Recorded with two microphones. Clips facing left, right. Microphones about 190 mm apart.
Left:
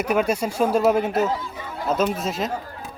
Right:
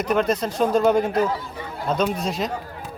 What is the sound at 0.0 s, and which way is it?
Speech, 10° left (ahead or behind).